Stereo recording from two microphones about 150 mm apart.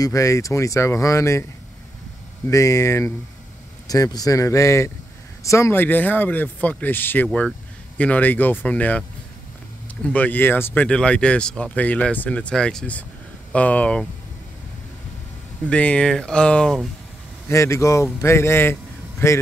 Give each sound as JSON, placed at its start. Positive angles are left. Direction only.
{"t": 0.0, "sound": "a man's voice", "side_deg": 20}
{"t": 2.4, "sound": "a man's voice", "side_deg": 20}
{"t": 10.0, "sound": "speech", "side_deg": 10}
{"t": 15.6, "sound": "speech", "side_deg": 10}
{"t": 17.5, "sound": "a man's voice", "side_deg": 20}